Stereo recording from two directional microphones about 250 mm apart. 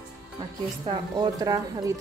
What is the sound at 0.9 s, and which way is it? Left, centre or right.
A woman's voice, centre.